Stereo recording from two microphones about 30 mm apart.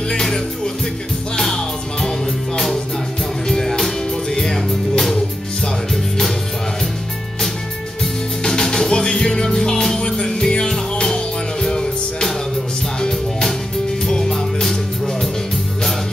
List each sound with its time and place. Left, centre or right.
0.1 s music: centre
1.4 s music: centre
8.5 s music: centre
14.0 s music: centre